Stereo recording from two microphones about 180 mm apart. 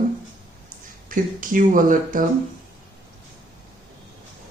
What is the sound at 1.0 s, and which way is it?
Speech, 50° right (ahead or behind).